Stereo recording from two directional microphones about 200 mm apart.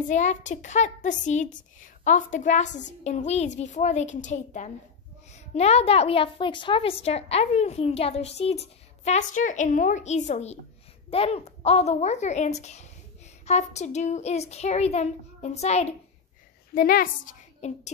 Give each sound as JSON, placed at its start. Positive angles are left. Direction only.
{"t": 0.1, "sound": "a woman's voice", "side_deg": 35}
{"t": 16.7, "sound": "a woman's voice", "side_deg": 45}